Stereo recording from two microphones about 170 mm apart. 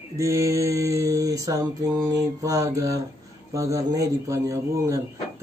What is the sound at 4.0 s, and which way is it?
Speech, 20° right (ahead or behind).